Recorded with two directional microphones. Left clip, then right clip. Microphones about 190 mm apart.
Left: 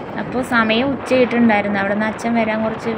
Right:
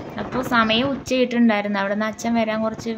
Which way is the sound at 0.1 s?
20° left (ahead or behind).